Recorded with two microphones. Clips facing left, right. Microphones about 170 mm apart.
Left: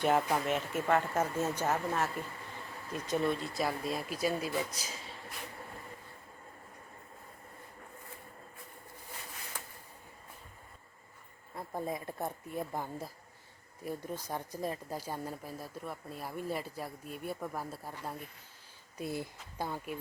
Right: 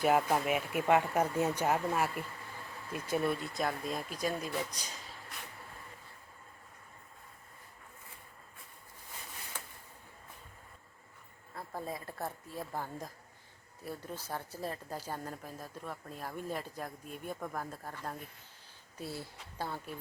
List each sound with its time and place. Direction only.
0.0 s speech: 5° right (ahead or behind)
11.5 s speech: 20° left (ahead or behind)